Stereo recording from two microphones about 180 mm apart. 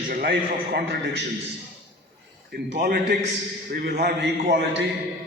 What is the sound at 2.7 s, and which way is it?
A man's voice, 70° right (ahead or behind).